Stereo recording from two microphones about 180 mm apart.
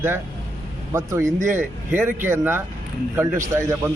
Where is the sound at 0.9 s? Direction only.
15° right (ahead or behind).